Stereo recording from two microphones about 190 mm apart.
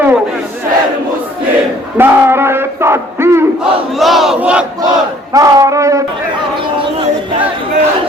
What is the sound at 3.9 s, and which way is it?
Battle cry, centre (ahead or behind).